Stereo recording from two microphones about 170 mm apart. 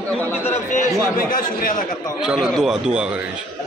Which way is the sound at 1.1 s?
55° left (ahead or behind).